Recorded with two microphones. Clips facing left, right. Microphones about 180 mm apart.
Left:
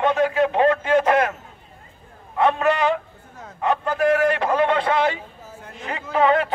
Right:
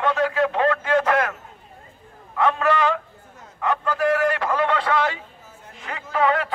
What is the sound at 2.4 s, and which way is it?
A man's voice, 20° left (ahead or behind).